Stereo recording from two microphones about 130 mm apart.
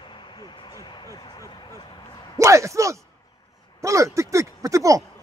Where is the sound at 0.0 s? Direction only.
40° left (ahead or behind).